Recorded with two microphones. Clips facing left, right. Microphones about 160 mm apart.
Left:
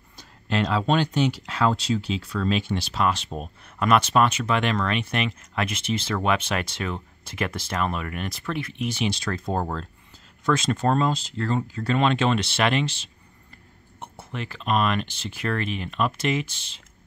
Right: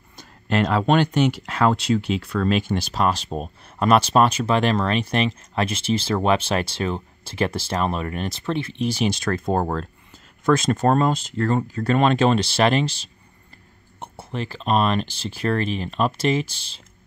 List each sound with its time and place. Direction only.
0.2 s speech: 50° right (ahead or behind)
10.4 s speech: 45° right (ahead or behind)